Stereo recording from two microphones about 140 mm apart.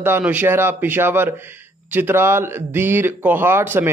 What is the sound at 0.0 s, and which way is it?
A man's voice, 15° right (ahead or behind).